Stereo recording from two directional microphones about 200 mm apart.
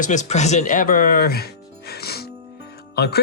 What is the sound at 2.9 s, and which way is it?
Speech, 55° left (ahead or behind).